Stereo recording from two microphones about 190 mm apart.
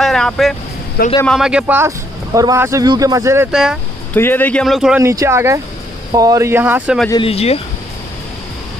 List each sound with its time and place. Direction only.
0.0 s vehicle: centre (ahead or behind)
1.2 s speech: centre (ahead or behind)
3.5 s speech: 5° right (ahead or behind)
4.1 s speech: 10° left (ahead or behind)
5.0 s speech: 15° right (ahead or behind)
7.1 s speech: 30° left (ahead or behind)